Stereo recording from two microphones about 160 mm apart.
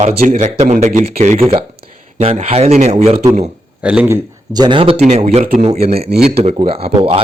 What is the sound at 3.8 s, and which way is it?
A man's voice, 10° right (ahead or behind).